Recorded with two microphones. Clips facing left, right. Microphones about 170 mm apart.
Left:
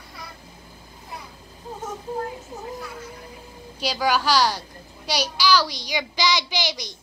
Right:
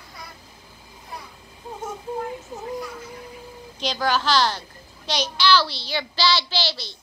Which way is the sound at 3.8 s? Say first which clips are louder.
Left 1 dB; 10° left (ahead or behind).